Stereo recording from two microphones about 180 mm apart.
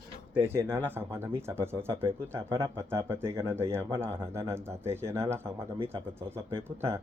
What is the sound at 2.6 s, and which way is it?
Speech, 15° right (ahead or behind).